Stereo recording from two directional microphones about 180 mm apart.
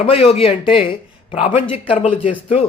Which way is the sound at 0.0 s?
35° left (ahead or behind).